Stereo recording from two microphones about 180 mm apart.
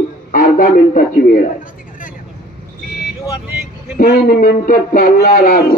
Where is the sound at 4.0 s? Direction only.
55° left (ahead or behind).